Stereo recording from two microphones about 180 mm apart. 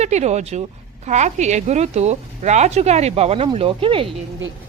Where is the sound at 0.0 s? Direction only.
40° right (ahead or behind).